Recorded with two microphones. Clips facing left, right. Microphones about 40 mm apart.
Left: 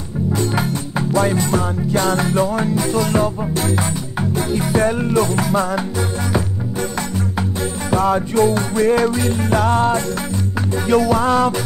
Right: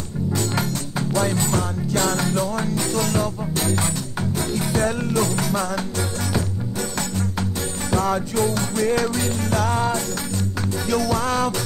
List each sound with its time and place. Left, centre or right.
0.3 s music: centre
7.9 s music: centre
9.7 s music: left
10.9 s music: centre